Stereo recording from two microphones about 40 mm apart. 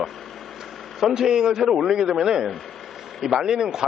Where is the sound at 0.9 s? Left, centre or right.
Centre.